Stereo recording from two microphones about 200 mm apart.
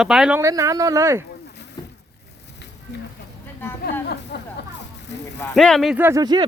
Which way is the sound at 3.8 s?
50° left (ahead or behind).